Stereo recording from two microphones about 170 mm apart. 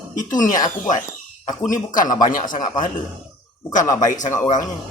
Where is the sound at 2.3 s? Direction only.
50° left (ahead or behind).